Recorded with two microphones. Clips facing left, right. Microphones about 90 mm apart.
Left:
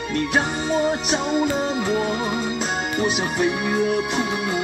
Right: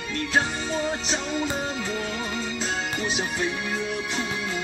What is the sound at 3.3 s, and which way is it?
Music, 20° left (ahead or behind).